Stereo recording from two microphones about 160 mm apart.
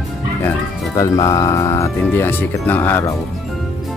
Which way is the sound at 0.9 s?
20° left (ahead or behind).